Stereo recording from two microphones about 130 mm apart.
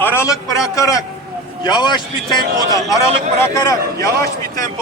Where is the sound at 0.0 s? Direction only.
20° left (ahead or behind).